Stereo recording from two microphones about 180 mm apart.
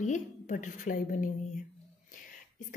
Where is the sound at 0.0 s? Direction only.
45° left (ahead or behind).